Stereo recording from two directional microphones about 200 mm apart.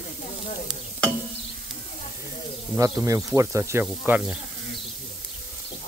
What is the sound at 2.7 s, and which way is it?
Speech, 15° right (ahead or behind).